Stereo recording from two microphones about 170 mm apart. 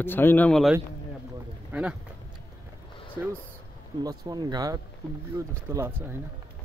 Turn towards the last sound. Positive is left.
turn(degrees=-15)  # may be behind; listen again after turning